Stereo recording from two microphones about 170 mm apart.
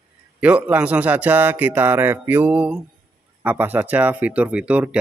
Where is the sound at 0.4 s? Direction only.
10° right (ahead or behind).